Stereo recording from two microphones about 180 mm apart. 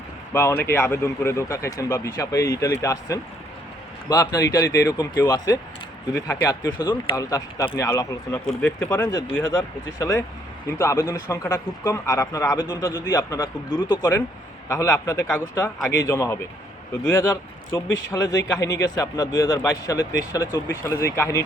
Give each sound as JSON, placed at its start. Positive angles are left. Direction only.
{"t": 0.3, "sound": "speech", "side_deg": 10}